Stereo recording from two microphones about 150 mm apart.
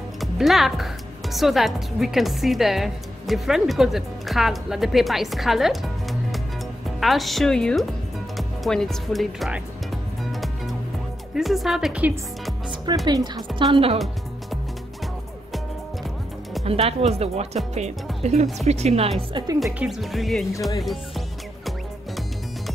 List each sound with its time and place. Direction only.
0.2 s a woman's voice: centre (ahead or behind)
8.4 s music: centre (ahead or behind)
11.3 s a woman's voice: centre (ahead or behind)
13.0 s a woman's voice: 25° right (ahead or behind)
13.9 s music: centre (ahead or behind)
16.6 s speech: 45° right (ahead or behind)
19.6 s a woman's voice: centre (ahead or behind)